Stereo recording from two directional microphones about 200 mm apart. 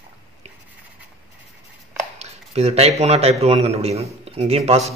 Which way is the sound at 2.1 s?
30° right (ahead or behind).